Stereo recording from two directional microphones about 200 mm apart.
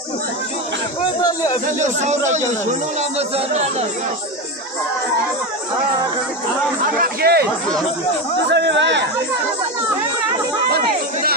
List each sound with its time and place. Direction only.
1.2 s speech: 20° left (ahead or behind)
1.8 s speech: 35° right (ahead or behind)
7.0 s speech: 50° right (ahead or behind)
8.5 s speech: 60° right (ahead or behind)